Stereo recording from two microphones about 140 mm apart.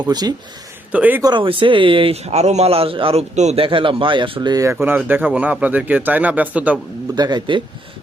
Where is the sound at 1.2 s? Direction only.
35° right (ahead or behind).